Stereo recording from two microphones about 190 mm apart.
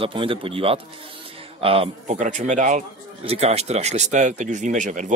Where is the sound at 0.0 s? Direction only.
30° right (ahead or behind).